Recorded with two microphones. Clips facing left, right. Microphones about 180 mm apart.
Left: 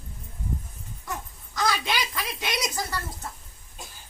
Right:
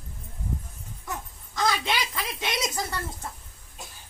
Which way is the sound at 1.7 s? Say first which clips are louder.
Even; 20° right (ahead or behind).